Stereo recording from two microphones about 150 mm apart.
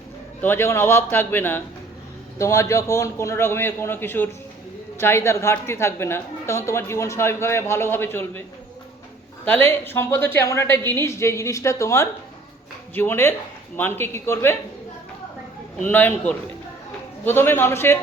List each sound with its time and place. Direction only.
0.4 s a woman's voice: 15° left (ahead or behind)
9.4 s a woman's voice: 15° left (ahead or behind)
15.8 s a woman's voice: 15° left (ahead or behind)